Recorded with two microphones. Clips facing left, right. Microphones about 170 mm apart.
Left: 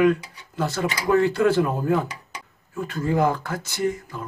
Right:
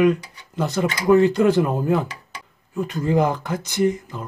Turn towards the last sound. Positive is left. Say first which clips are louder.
# right 5 dB
turn(degrees=-20)  # may be behind; listen again after turning